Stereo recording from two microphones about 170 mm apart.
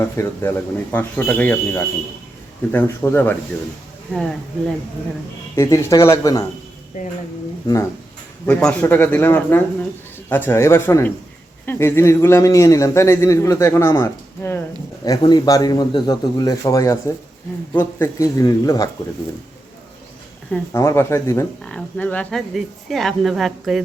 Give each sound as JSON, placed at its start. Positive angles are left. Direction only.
{"t": 0.0, "sound": "speech", "side_deg": 15}
{"t": 5.5, "sound": "speech", "side_deg": 20}
{"t": 6.9, "sound": "speech", "side_deg": 50}
{"t": 8.4, "sound": "a man's voice", "side_deg": 10}
{"t": 20.7, "sound": "speech", "side_deg": 15}
{"t": 21.6, "sound": "speech", "side_deg": 5}